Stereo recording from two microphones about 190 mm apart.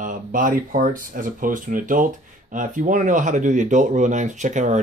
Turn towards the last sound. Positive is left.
turn(degrees=-40)  # may be behind; listen again after turning